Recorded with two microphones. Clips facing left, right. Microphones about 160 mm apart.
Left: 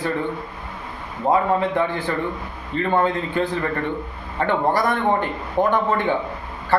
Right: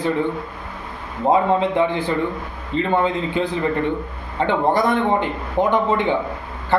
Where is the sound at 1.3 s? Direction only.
20° right (ahead or behind).